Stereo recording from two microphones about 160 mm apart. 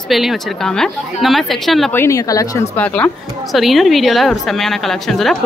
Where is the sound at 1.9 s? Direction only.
20° left (ahead or behind).